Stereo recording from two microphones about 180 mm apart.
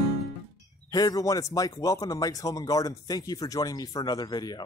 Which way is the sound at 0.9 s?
20° left (ahead or behind).